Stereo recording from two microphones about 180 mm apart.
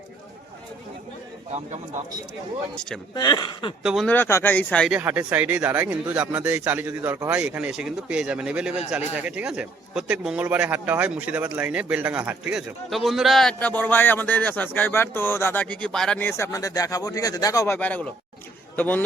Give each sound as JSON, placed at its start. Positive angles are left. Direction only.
{"t": 1.5, "sound": "speech", "side_deg": -40}
{"t": 3.2, "sound": "speech", "side_deg": 25}
{"t": 3.8, "sound": "a man's voice", "side_deg": 0}
{"t": 4.1, "sound": "speech", "side_deg": 15}
{"t": 4.9, "sound": "a man's voice", "side_deg": -10}